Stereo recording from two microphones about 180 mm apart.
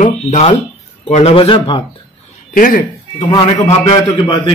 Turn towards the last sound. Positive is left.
turn(degrees=20)  # may be behind; listen again after turning